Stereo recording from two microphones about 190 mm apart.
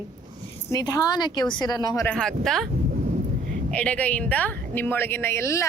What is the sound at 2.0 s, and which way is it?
Speech, 5° left (ahead or behind).